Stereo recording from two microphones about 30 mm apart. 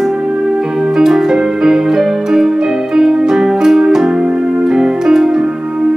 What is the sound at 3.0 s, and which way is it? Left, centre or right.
Music, centre.